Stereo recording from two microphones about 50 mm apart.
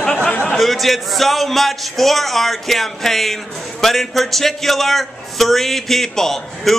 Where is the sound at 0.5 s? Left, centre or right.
Centre.